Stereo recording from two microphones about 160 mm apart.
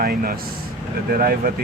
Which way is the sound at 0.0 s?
65° right (ahead or behind).